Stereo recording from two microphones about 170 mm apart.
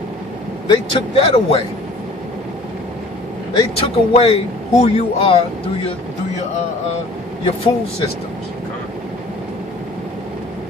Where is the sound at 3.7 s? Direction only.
35° left (ahead or behind).